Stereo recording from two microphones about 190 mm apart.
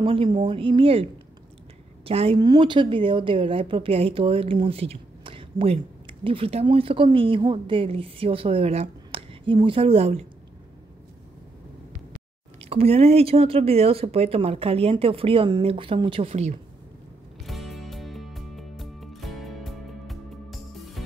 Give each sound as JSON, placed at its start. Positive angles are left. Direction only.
{"t": 0.0, "sound": "speech", "side_deg": -30}
{"t": 2.0, "sound": "speech", "side_deg": -30}
{"t": 12.6, "sound": "speech", "side_deg": -35}
{"t": 17.5, "sound": "music", "side_deg": 0}